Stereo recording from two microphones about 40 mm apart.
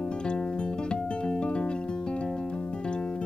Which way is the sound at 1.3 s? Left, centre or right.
Left.